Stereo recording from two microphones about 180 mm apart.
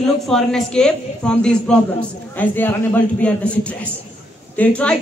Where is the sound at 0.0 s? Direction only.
5° left (ahead or behind).